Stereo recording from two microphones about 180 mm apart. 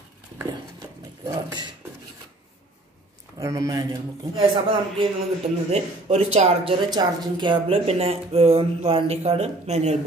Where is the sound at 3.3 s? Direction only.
20° right (ahead or behind).